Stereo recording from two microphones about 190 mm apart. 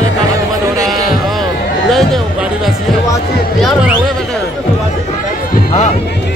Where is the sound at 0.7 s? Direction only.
20° right (ahead or behind).